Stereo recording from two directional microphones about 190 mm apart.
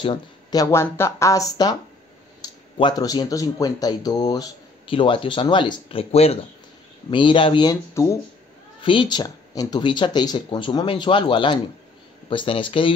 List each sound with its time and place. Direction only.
0.0 s speech: 25° left (ahead or behind)
2.8 s speech: 20° left (ahead or behind)
8.8 s speech: 25° left (ahead or behind)